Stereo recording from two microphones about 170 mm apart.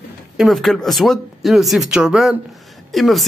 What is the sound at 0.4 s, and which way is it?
A man's voice, centre (ahead or behind).